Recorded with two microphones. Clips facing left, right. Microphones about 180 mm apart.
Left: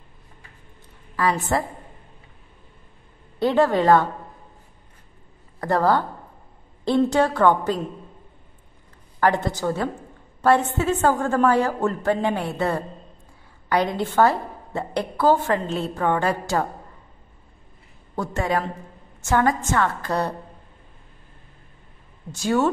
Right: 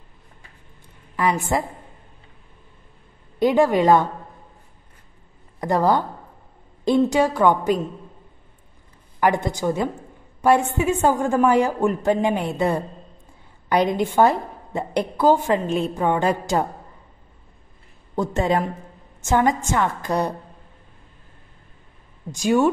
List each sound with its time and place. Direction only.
1.1 s a woman's voice: 15° right (ahead or behind)
3.3 s a woman's voice: 15° right (ahead or behind)
5.6 s a woman's voice: 15° right (ahead or behind)
9.2 s a woman's voice: 15° right (ahead or behind)
18.1 s a woman's voice: 20° right (ahead or behind)
22.3 s a woman's voice: 15° right (ahead or behind)